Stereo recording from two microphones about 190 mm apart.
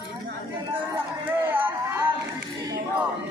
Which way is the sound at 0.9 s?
10° right (ahead or behind).